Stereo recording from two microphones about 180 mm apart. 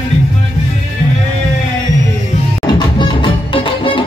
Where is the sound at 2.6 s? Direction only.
25° left (ahead or behind).